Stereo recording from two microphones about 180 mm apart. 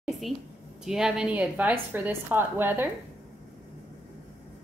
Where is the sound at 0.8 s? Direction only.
5° right (ahead or behind).